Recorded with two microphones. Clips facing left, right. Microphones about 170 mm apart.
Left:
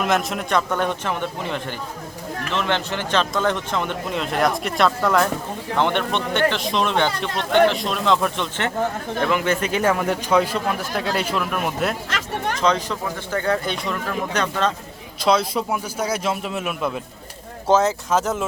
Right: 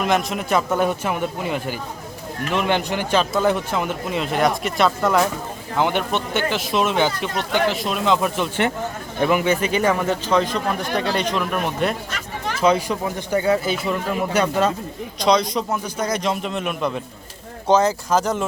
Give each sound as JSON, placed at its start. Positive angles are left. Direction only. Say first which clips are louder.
{"t": 0.0, "sound": "speech", "louder": "right 1 dB", "side_deg": 0}
{"t": 12.1, "sound": "chatter", "louder": "left 3 dB", "side_deg": 65}
{"t": 12.5, "sound": "speech", "louder": "right 5 dB", "side_deg": -10}
{"t": 15.2, "sound": "speech", "louder": "right 1 dB", "side_deg": 5}